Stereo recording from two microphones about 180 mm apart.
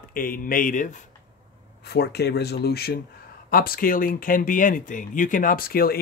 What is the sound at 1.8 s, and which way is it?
Speech, 65° left (ahead or behind).